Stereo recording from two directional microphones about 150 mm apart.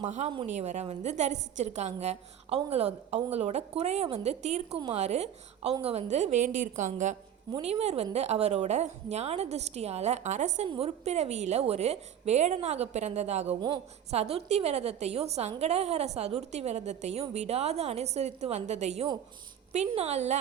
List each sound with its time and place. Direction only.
0.0 s a woman's voice: 50° right (ahead or behind)
7.5 s a woman's voice: 45° right (ahead or behind)
10.7 s a woman's voice: 40° right (ahead or behind)